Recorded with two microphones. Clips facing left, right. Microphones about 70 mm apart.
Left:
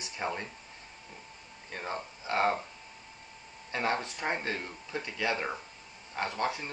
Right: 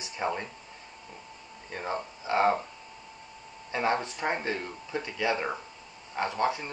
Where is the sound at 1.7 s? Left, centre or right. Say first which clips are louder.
Right 4 dB; centre.